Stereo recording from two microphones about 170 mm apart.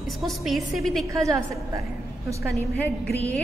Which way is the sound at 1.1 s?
20° right (ahead or behind).